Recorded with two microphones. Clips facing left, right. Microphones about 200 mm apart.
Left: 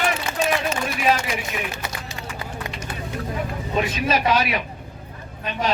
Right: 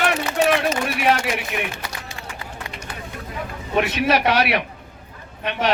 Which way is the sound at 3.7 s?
70° right (ahead or behind).